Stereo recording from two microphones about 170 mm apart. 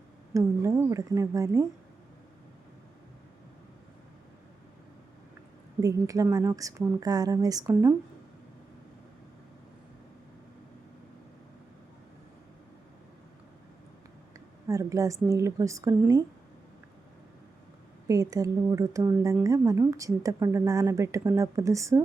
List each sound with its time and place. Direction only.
0.3 s a woman's voice: 20° right (ahead or behind)
5.8 s a woman's voice: 20° right (ahead or behind)
14.3 s a woman's voice: 20° right (ahead or behind)
18.1 s a woman's voice: 20° right (ahead or behind)